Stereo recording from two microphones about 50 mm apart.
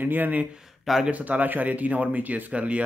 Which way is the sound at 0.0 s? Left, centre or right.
Right.